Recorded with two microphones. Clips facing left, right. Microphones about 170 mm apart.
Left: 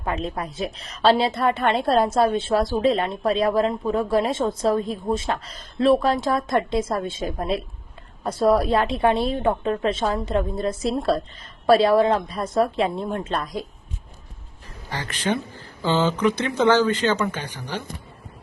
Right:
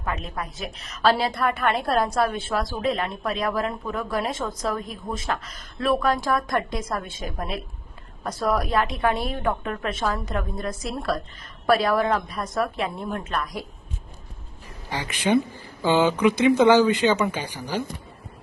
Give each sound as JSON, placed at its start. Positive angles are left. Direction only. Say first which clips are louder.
{"t": 0.0, "sound": "a woman's voice", "louder": "left 4 dB", "side_deg": 30}
{"t": 14.8, "sound": "speech", "louder": "right 2 dB", "side_deg": -15}